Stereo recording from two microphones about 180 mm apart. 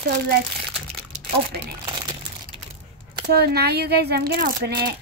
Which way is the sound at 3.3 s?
60° right (ahead or behind).